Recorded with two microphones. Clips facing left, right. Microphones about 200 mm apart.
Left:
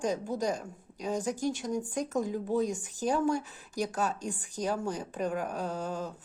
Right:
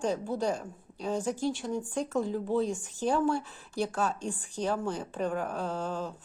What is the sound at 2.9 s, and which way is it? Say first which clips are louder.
Speech: right 1 dB; 40° left (ahead or behind).